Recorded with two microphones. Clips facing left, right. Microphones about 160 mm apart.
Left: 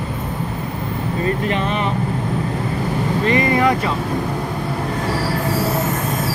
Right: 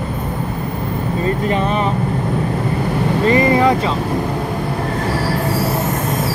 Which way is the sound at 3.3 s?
30° right (ahead or behind).